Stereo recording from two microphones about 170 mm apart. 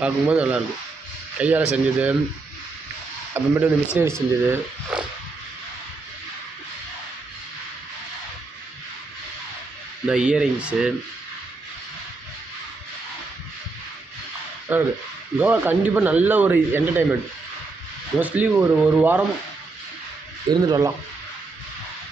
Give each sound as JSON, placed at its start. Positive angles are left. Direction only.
{"t": 0.0, "sound": "a man's voice", "side_deg": -10}
{"t": 3.3, "sound": "a man's voice", "side_deg": -10}
{"t": 10.0, "sound": "speech", "side_deg": -5}
{"t": 14.7, "sound": "a man's voice", "side_deg": -10}
{"t": 18.2, "sound": "a man's voice", "side_deg": -10}
{"t": 20.6, "sound": "speech", "side_deg": -25}